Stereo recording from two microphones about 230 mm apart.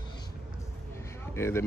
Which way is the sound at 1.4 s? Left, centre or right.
Centre.